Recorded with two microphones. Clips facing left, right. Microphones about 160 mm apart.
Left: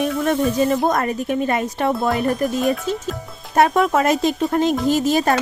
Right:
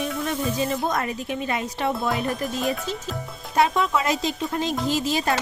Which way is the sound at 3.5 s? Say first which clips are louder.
Left 5 dB; 50° left (ahead or behind).